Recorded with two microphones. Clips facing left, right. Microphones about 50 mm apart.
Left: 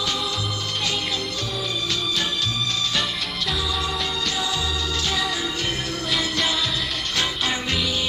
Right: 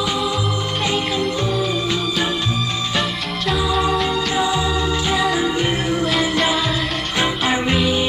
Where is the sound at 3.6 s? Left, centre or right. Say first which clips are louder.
Right 10 dB; centre.